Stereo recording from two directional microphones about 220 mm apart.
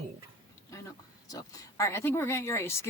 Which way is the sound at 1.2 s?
15° left (ahead or behind).